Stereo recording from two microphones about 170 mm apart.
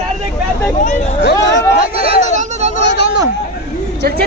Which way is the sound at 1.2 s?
85° left.